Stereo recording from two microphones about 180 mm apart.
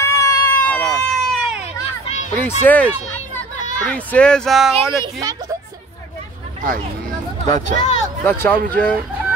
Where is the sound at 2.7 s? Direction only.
10° left (ahead or behind).